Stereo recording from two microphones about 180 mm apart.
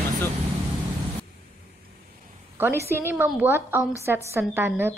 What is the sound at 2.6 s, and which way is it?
Speech, 15° right (ahead or behind).